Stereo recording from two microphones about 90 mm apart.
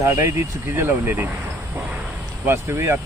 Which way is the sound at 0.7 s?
25° right (ahead or behind).